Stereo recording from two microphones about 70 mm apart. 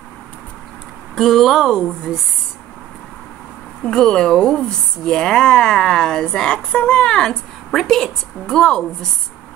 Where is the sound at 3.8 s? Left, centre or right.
Centre.